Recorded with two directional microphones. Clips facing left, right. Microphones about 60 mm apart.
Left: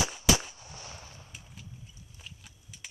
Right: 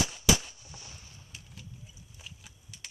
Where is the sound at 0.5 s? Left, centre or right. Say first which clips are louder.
Left 4 dB; left.